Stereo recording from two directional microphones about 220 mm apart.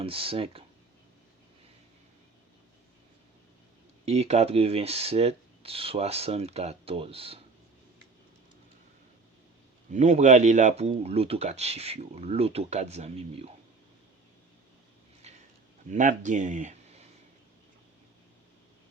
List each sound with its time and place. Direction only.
0.0 s speech: 25° right (ahead or behind)
4.0 s speech: 30° right (ahead or behind)
9.9 s speech: 30° right (ahead or behind)
15.9 s speech: 35° right (ahead or behind)